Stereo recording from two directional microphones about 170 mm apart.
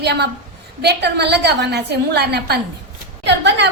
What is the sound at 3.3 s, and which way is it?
Speech, 90° right.